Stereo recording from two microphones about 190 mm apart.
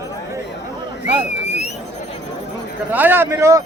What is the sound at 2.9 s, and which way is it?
Speech, 10° right (ahead or behind).